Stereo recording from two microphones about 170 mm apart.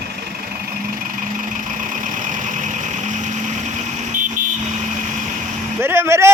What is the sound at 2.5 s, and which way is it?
Vehicle, 45° right (ahead or behind).